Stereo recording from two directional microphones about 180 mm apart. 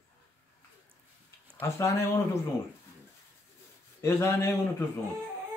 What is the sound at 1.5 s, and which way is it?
Speech, 15° left (ahead or behind).